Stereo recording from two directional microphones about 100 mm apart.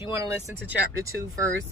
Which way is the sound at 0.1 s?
30° right (ahead or behind).